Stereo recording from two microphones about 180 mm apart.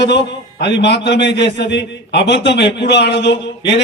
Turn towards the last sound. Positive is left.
turn(degrees=80)